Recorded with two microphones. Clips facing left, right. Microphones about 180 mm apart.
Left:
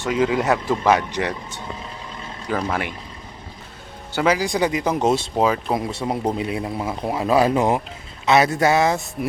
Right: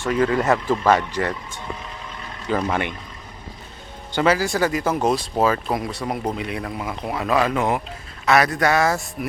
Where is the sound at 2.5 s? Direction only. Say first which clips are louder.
Right 1 dB; centre (ahead or behind).